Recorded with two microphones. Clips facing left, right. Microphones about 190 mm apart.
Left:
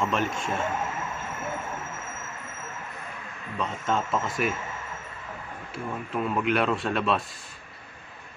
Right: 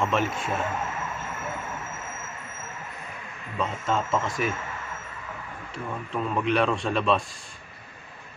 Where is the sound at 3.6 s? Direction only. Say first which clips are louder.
Right 1 dB; centre (ahead or behind).